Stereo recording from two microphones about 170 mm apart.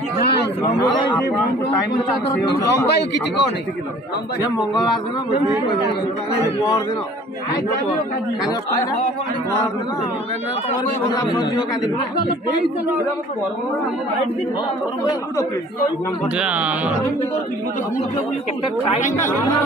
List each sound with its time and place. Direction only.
2.7 s a man's voice: 90° left
16.3 s speech: 5° right (ahead or behind)